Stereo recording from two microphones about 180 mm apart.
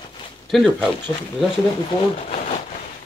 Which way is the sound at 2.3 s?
40° left (ahead or behind).